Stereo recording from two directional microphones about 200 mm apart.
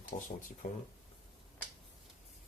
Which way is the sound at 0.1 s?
35° left (ahead or behind).